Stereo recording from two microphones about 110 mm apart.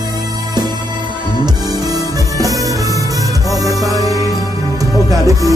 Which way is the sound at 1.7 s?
35° right (ahead or behind).